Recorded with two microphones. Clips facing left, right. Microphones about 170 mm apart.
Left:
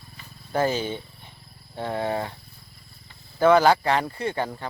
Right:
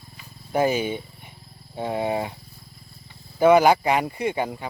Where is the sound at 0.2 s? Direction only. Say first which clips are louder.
Right 2 dB; 15° right (ahead or behind).